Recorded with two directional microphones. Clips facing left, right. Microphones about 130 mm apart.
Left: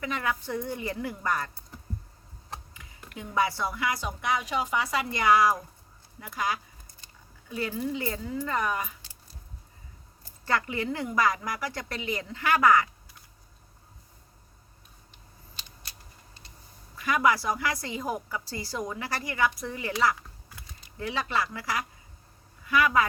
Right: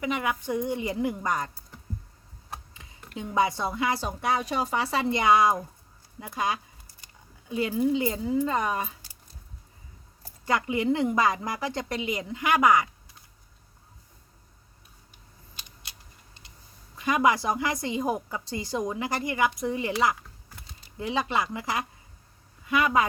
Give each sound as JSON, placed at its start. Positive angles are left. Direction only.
{"t": 0.0, "sound": "a woman's voice", "side_deg": -20}
{"t": 2.7, "sound": "a woman's voice", "side_deg": -25}
{"t": 10.4, "sound": "a woman's voice", "side_deg": -15}
{"t": 17.0, "sound": "a woman's voice", "side_deg": -20}